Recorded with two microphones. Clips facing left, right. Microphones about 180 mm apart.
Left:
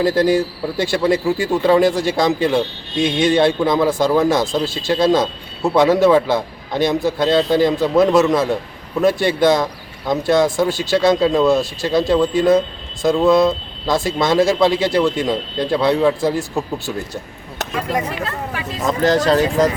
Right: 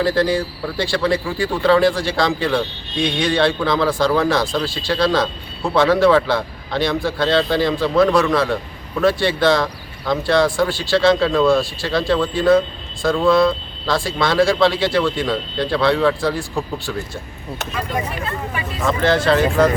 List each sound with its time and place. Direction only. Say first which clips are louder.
0.0 s speech: left 3 dB; 20° left (ahead or behind)
18.9 s speech: left 1 dB; 40° left (ahead or behind)